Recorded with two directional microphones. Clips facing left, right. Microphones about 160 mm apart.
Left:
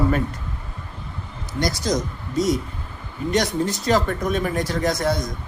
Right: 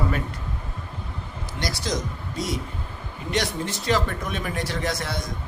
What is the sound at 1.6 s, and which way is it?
Speech, 45° left (ahead or behind).